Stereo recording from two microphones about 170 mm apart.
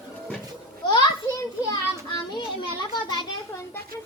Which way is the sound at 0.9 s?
25° left (ahead or behind).